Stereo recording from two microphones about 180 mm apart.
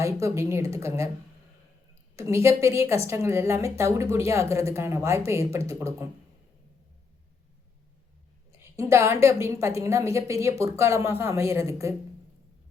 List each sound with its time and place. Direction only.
0.0 s a woman's voice: 15° right (ahead or behind)
2.1 s a woman's voice: 15° right (ahead or behind)
8.5 s a woman's voice: 15° right (ahead or behind)